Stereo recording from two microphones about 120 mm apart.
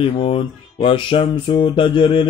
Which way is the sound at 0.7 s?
45° left (ahead or behind).